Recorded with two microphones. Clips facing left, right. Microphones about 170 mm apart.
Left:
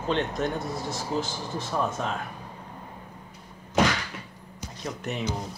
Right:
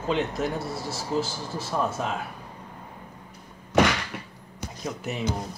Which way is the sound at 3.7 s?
65° right (ahead or behind).